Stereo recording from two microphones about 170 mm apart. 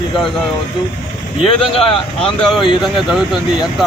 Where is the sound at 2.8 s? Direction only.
Centre (ahead or behind).